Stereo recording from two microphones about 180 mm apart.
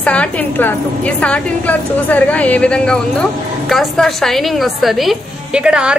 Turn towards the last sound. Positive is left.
turn(degrees=-5)  # may be behind; listen again after turning